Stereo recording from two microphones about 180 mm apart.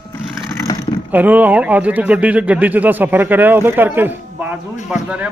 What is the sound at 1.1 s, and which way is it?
Speech, 10° right (ahead or behind).